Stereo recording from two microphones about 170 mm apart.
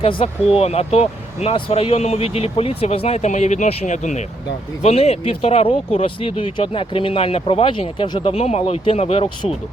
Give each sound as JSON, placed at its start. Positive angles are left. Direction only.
{"t": 0.0, "sound": "speech", "side_deg": 30}